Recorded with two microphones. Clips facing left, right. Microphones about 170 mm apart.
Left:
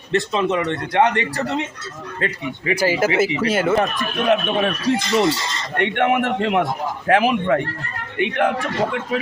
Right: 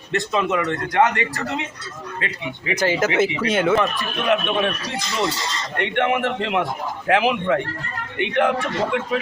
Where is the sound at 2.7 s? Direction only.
10° left (ahead or behind).